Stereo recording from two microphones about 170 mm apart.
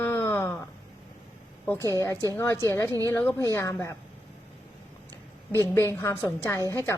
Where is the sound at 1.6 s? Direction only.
15° left (ahead or behind).